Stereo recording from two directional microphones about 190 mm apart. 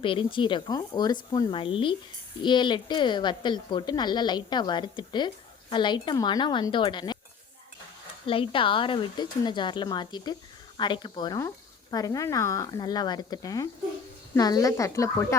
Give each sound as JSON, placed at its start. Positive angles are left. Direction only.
{"t": 0.0, "sound": "a woman's voice", "side_deg": 25}
{"t": 8.3, "sound": "a woman's voice", "side_deg": 30}